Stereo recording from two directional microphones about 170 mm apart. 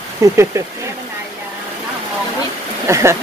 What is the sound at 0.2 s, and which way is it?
Speech, 15° right (ahead or behind).